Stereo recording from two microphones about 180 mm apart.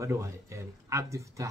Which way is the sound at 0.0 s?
15° right (ahead or behind).